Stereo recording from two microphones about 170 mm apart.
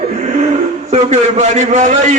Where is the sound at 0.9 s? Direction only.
40° right (ahead or behind).